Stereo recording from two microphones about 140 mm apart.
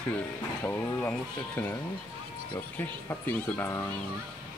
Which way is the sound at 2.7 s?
15° left (ahead or behind).